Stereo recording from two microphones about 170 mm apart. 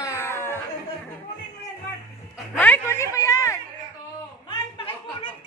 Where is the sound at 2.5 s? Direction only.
10° left (ahead or behind).